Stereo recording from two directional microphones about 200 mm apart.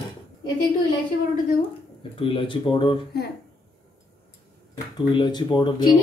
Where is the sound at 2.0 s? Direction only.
25° left (ahead or behind).